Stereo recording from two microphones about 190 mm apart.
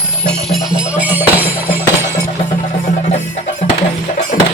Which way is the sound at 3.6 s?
35° left (ahead or behind).